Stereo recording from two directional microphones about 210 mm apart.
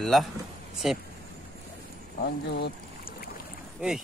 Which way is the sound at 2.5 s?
50° left (ahead or behind).